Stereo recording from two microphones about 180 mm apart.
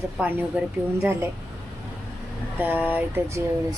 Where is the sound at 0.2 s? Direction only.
10° right (ahead or behind).